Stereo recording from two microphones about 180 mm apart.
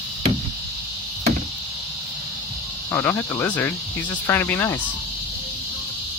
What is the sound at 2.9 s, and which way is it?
Speech, 10° left (ahead or behind).